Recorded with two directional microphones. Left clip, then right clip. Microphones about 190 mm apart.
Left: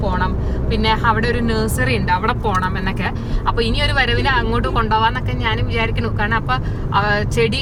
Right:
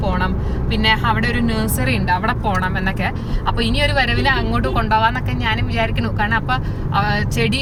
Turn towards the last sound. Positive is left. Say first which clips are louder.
# left 3 dB
turn(degrees=-15)  # may be behind; listen again after turning